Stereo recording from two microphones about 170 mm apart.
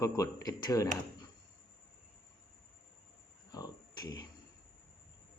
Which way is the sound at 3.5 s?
25° left (ahead or behind).